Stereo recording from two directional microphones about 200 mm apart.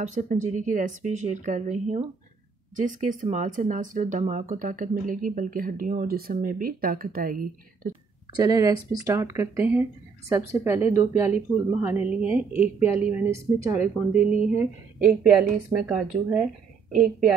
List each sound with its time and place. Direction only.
0.0 s speech: 35° right (ahead or behind)
8.3 s a woman's voice: 20° right (ahead or behind)